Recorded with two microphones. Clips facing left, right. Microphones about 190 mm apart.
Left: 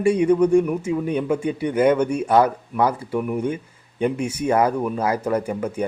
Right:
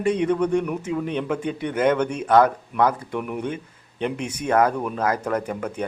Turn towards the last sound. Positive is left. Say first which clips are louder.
# left 3 dB
turn(degrees=10)  # may be behind; listen again after turning